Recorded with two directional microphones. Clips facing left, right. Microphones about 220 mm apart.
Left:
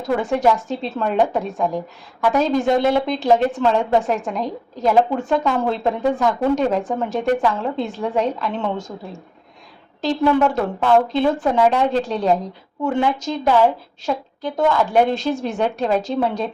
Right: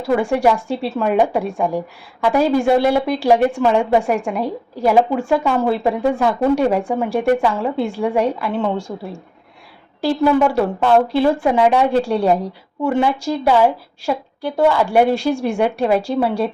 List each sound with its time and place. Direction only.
0.0 s a woman's voice: 10° right (ahead or behind)
10.0 s a woman's voice: 10° right (ahead or behind)